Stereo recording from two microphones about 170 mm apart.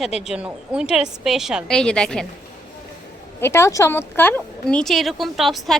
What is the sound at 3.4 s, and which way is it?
Speech, 15° left (ahead or behind).